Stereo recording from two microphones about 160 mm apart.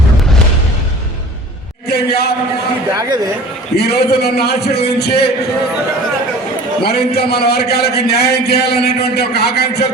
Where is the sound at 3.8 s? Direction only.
90° left.